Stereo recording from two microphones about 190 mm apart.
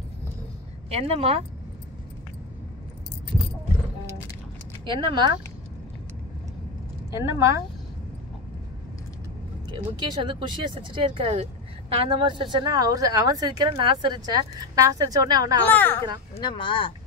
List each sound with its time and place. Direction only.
0.8 s a woman's voice: 30° right (ahead or behind)
4.8 s speech: 25° right (ahead or behind)
7.1 s speech: 15° right (ahead or behind)
9.7 s speech: 25° right (ahead or behind)
15.7 s speech: 10° left (ahead or behind)
16.3 s speech: 25° left (ahead or behind)